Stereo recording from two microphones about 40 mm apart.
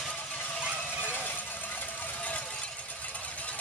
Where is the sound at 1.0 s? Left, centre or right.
Left.